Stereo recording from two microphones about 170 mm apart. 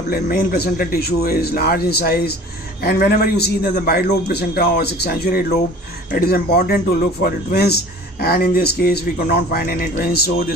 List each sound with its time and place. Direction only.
0.1 s speech: 60° left (ahead or behind)